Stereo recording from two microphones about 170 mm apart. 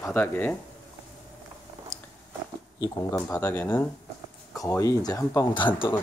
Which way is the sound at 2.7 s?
20° left (ahead or behind).